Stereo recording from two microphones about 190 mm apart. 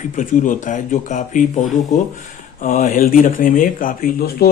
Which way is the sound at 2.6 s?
45° left (ahead or behind).